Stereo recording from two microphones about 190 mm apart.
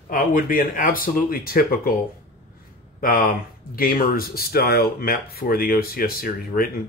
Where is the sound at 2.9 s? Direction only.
50° left (ahead or behind).